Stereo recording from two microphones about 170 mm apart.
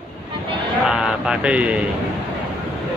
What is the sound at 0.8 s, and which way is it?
Speech, 5° right (ahead or behind).